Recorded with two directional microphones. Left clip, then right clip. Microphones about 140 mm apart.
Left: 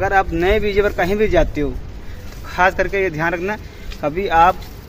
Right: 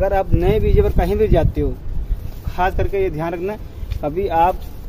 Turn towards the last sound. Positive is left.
turn(degrees=-35)  # may be behind; listen again after turning